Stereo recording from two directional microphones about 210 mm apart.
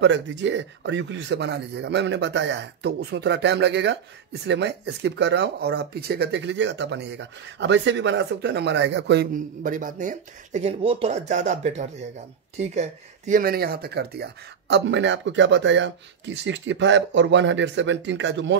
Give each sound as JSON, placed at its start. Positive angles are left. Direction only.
{"t": 0.0, "sound": "speech", "side_deg": -60}
{"t": 13.3, "sound": "speech", "side_deg": -45}